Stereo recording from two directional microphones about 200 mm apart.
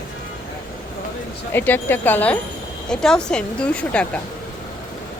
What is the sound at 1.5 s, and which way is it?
Speech, 10° left (ahead or behind).